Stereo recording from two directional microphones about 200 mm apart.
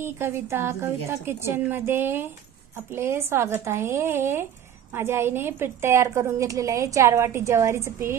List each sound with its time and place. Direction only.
0.0 s a woman's voice: 10° right (ahead or behind)